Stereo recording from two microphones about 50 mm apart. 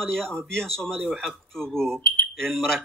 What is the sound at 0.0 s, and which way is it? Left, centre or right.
Speech, centre.